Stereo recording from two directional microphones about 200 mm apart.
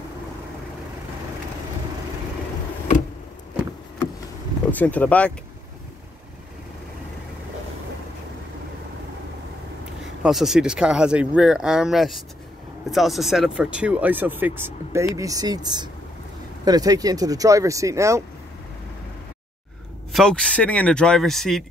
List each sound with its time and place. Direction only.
4.6 s speech: 10° left (ahead or behind)
10.2 s speech: centre (ahead or behind)
20.1 s speech: centre (ahead or behind)